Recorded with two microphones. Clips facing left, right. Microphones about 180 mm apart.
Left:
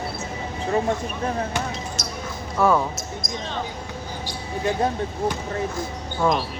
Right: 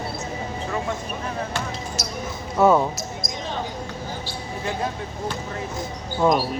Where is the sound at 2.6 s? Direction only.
20° right (ahead or behind).